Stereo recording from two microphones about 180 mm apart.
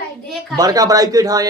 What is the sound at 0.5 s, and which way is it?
Speech, 20° right (ahead or behind).